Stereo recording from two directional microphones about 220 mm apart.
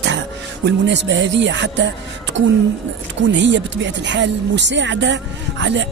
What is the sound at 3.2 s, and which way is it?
Speech, 55° right (ahead or behind).